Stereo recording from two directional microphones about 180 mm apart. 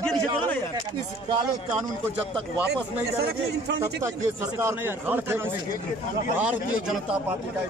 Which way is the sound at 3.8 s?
15° right (ahead or behind).